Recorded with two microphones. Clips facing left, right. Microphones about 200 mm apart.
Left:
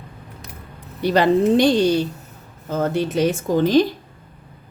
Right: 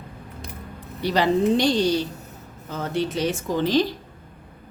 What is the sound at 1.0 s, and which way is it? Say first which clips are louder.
Speech: left 4 dB; 55° left (ahead or behind).